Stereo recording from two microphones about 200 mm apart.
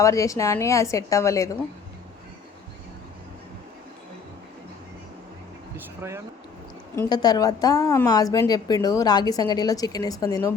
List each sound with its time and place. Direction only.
0.0 s a woman's voice: 15° left (ahead or behind)
6.0 s speech: 15° right (ahead or behind)
6.9 s a woman's voice: 15° left (ahead or behind)